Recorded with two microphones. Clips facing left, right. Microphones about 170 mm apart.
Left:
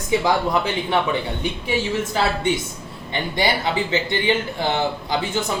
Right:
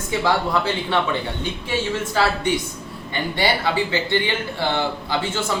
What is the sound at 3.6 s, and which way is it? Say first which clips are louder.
A man's voice: even; 20° left (ahead or behind).